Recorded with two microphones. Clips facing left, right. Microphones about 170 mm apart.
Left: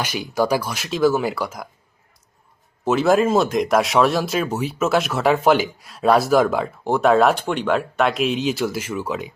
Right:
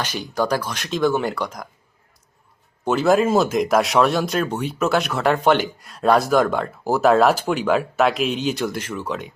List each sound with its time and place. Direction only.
0.0 s speech: 10° left (ahead or behind)
2.8 s speech: centre (ahead or behind)